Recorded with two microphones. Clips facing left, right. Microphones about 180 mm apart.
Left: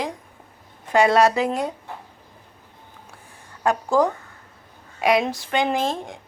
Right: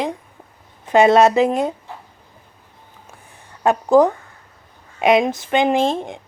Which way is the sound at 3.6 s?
20° right (ahead or behind).